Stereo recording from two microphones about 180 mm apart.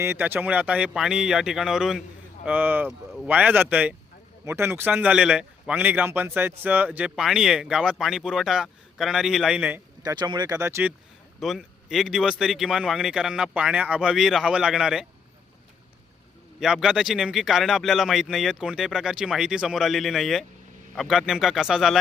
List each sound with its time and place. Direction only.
0.0 s a man's voice: 10° right (ahead or behind)
10.0 s a man's voice: 20° right (ahead or behind)
11.3 s speech: centre (ahead or behind)
16.6 s speech: 5° right (ahead or behind)